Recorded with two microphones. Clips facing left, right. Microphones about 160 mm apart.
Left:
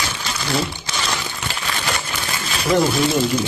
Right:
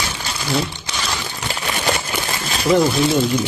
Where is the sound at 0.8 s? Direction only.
15° right (ahead or behind).